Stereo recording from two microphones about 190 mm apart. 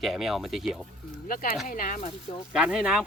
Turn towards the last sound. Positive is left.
turn(degrees=0)  # may be behind; listen again after turning